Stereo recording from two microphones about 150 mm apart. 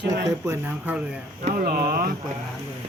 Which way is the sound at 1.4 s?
75° right (ahead or behind).